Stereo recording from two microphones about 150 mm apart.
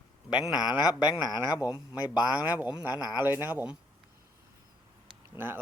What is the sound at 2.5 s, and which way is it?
Speech, 10° right (ahead or behind).